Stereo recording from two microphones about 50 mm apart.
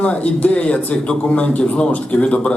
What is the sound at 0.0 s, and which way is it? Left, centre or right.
Speech, left.